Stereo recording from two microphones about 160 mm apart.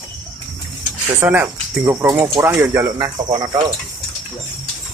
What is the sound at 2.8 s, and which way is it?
Speech, 25° right (ahead or behind).